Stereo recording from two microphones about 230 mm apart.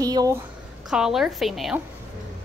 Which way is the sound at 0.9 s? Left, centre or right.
Centre.